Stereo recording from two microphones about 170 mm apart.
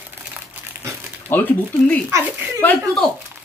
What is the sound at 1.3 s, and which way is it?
Speech, 10° left (ahead or behind).